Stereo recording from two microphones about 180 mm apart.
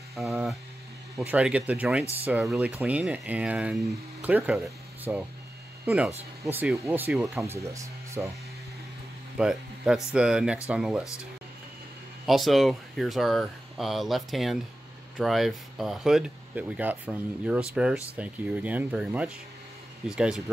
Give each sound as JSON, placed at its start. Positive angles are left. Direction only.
{"t": 0.1, "sound": "speech", "side_deg": 0}
{"t": 7.5, "sound": "speech", "side_deg": -15}
{"t": 9.4, "sound": "speech", "side_deg": -5}
{"t": 12.3, "sound": "speech", "side_deg": 0}